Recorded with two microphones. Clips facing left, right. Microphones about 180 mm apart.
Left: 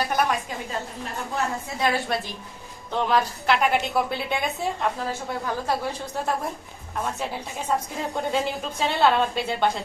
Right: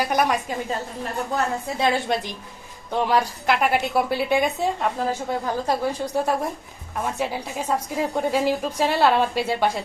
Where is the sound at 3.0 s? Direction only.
10° right (ahead or behind).